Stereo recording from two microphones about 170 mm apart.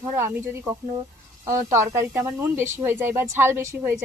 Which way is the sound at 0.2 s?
15° right (ahead or behind).